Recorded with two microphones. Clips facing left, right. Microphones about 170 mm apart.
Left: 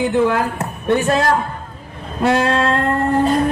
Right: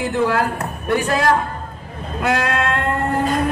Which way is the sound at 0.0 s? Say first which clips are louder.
Left 3 dB; 20° left (ahead or behind).